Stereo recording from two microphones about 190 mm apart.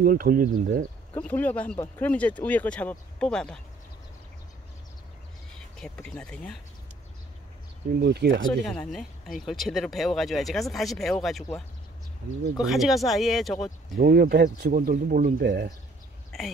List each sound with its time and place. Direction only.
0.0 s speech: 50° right (ahead or behind)
1.1 s speech: 10° left (ahead or behind)
5.8 s speech: 5° left (ahead or behind)
8.0 s speech: 60° right (ahead or behind)
8.7 s speech: centre (ahead or behind)
12.5 s speech: centre (ahead or behind)
13.9 s speech: 50° right (ahead or behind)